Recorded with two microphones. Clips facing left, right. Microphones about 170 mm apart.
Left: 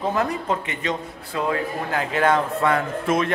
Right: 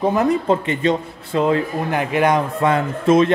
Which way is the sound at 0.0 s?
20° right (ahead or behind).